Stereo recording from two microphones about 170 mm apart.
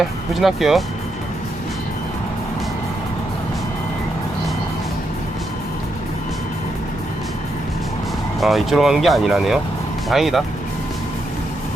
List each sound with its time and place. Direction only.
0.3 s speech: centre (ahead or behind)
8.4 s speech: centre (ahead or behind)